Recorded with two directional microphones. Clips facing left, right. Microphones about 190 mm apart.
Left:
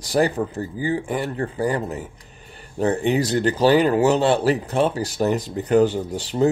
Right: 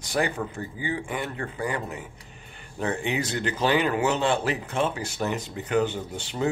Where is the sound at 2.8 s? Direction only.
35° left (ahead or behind).